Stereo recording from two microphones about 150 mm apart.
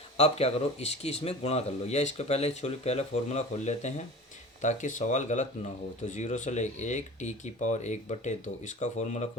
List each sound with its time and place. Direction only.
0.2 s speech: 45° left (ahead or behind)